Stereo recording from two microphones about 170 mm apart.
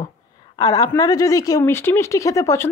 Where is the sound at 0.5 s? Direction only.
20° left (ahead or behind).